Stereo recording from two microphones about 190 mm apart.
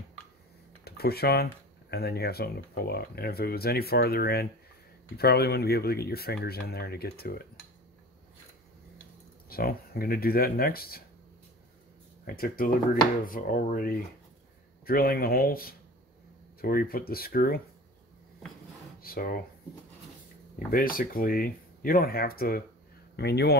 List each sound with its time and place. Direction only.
0.8 s speech: 55° left (ahead or behind)
9.5 s speech: 50° left (ahead or behind)
12.3 s speech: 50° left (ahead or behind)
18.9 s speech: 50° left (ahead or behind)
20.5 s speech: 50° left (ahead or behind)